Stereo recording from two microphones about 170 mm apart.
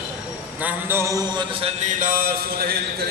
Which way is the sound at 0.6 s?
10° right (ahead or behind).